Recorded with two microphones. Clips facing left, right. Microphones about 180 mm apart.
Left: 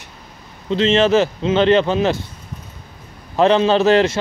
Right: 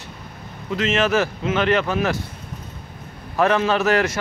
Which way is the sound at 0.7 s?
30° left (ahead or behind).